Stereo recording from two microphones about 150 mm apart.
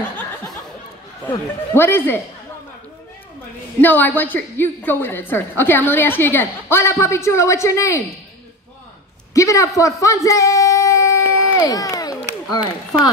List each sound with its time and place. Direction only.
1.3 s a woman's voice: 15° left (ahead or behind)
3.8 s a woman's voice: 10° left (ahead or behind)
9.3 s a woman's voice: 20° left (ahead or behind)
9.8 s a sound: 20° left (ahead or behind)